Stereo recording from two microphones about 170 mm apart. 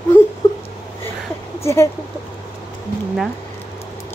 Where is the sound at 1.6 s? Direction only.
15° left (ahead or behind).